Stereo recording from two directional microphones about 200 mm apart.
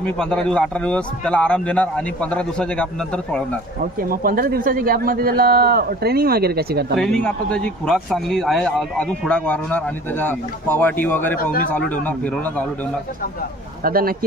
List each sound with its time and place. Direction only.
0.0 s a man's voice: 5° left (ahead or behind)
4.0 s a man's voice: 45° right (ahead or behind)
7.0 s a man's voice: 5° left (ahead or behind)
13.8 s a man's voice: 45° right (ahead or behind)